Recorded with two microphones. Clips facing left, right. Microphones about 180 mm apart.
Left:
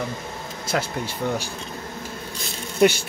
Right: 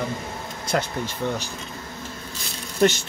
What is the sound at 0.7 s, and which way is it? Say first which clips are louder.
Speech: right 1 dB; 10° left (ahead or behind).